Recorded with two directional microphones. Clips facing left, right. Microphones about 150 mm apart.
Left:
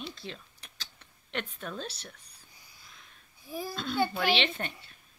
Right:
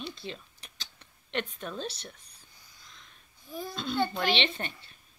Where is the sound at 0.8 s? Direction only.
5° left (ahead or behind).